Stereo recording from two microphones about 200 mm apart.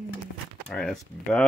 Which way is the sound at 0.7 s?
5° left (ahead or behind).